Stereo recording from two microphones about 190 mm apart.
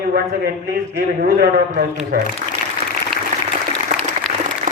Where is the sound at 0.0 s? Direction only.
55° right (ahead or behind).